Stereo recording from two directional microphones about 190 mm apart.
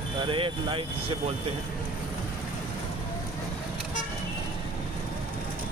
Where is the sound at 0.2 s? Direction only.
25° right (ahead or behind).